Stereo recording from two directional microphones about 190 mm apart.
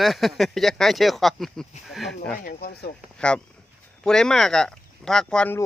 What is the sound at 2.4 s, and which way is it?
Speech, 50° left (ahead or behind).